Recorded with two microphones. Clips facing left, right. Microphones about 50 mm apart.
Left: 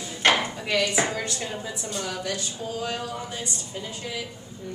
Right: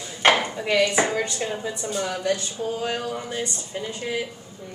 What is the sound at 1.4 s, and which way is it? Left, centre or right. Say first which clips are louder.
A woman's voice: right 4 dB; centre.